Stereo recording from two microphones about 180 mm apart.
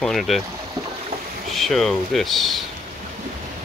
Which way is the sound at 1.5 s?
Centre (ahead or behind).